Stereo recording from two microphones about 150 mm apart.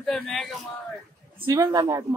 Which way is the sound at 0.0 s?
Centre (ahead or behind).